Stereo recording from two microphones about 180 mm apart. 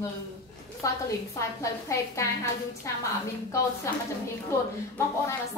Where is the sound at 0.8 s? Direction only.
20° left (ahead or behind).